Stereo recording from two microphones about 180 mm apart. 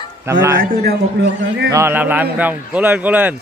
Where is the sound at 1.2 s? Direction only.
70° right (ahead or behind).